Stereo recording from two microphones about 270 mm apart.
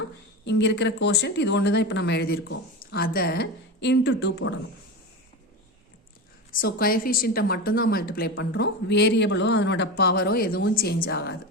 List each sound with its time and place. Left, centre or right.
0.4 s a woman's voice: left
6.5 s a woman's voice: left